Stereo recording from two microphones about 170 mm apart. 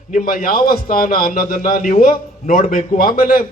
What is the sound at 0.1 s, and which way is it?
A man's voice, 55° left (ahead or behind).